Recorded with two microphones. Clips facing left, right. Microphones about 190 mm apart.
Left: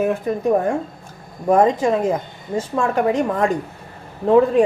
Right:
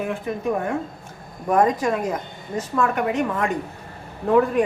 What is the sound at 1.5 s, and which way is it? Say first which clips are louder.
Speech: left 4 dB; 25° left (ahead or behind).